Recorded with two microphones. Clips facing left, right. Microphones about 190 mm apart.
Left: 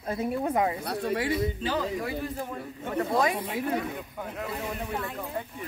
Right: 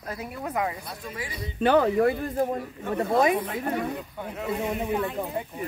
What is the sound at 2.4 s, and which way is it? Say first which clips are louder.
Speech: right 8 dB; 40° right (ahead or behind).